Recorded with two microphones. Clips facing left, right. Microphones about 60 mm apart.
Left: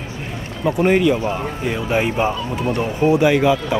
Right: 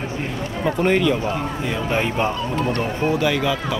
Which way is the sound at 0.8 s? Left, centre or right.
Centre.